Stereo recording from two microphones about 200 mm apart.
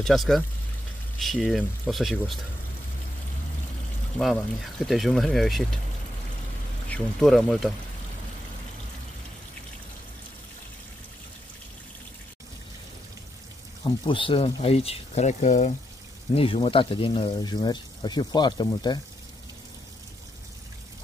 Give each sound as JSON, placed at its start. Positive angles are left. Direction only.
{"t": 0.0, "sound": "speech", "side_deg": 0}
{"t": 4.2, "sound": "speech", "side_deg": 0}
{"t": 6.9, "sound": "speech", "side_deg": 0}
{"t": 13.8, "sound": "speech", "side_deg": 25}